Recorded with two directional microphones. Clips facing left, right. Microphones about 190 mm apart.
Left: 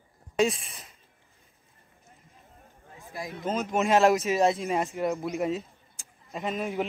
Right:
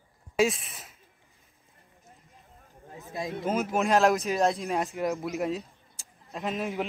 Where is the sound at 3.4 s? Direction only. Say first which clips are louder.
Left 1 dB; 10° right (ahead or behind).